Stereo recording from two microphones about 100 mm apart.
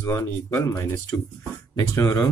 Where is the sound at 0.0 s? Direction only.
30° left (ahead or behind).